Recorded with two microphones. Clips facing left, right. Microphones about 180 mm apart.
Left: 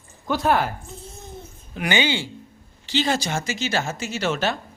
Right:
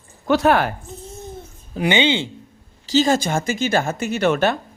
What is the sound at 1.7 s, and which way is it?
Speech, 25° right (ahead or behind).